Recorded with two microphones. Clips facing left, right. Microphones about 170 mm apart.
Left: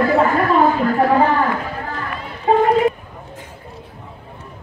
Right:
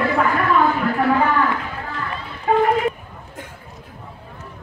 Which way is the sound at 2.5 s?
30° left (ahead or behind).